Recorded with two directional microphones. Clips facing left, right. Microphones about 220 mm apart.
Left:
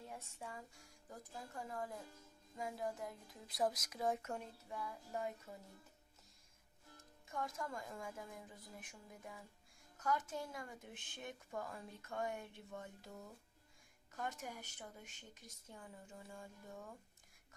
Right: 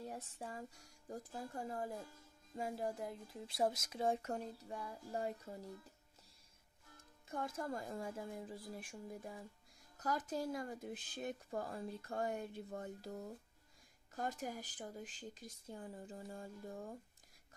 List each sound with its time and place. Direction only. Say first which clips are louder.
0.0 s speech: right 4 dB; 35° right (ahead or behind)
7.2 s speech: right 3 dB; 35° right (ahead or behind)